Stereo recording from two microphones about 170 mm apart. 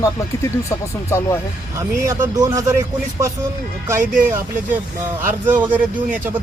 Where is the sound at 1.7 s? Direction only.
20° right (ahead or behind).